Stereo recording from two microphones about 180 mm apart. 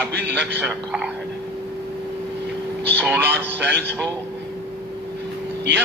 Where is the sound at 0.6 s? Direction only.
Centre (ahead or behind).